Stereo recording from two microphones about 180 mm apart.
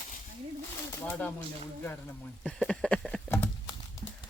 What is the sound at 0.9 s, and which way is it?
Pigeon, 10° left (ahead or behind).